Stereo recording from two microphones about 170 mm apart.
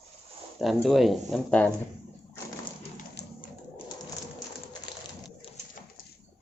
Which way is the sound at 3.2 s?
80° left.